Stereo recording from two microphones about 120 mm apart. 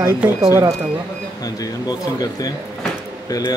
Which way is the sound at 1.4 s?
30° left (ahead or behind).